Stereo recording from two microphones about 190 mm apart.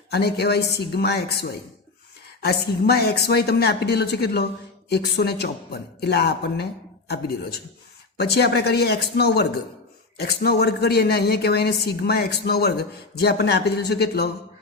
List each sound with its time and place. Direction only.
0.1 s a woman's voice: 60° left (ahead or behind)
8.2 s a woman's voice: 60° left (ahead or behind)